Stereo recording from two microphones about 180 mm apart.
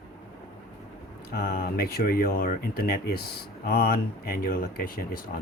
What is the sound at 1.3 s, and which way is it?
Speech, 55° left (ahead or behind).